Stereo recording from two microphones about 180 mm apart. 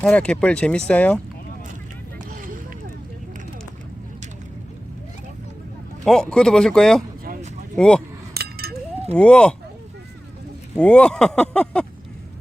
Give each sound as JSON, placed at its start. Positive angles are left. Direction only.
{"t": 0.0, "sound": "speech", "side_deg": 5}
{"t": 2.3, "sound": "a sound", "side_deg": -50}
{"t": 6.1, "sound": "speech", "side_deg": 5}
{"t": 8.3, "sound": "a sound", "side_deg": -60}
{"t": 9.1, "sound": "speech", "side_deg": 5}
{"t": 10.8, "sound": "speech", "side_deg": 5}